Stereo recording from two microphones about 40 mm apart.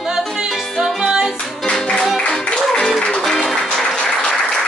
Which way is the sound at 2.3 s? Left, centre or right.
Centre.